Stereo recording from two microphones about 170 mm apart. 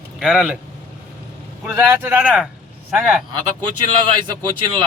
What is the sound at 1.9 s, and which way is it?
Speech, 15° right (ahead or behind).